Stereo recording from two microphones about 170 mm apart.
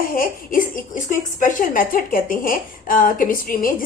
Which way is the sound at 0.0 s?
55° left (ahead or behind).